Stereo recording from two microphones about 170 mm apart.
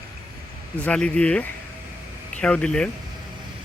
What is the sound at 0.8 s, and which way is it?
Speech, 5° left (ahead or behind).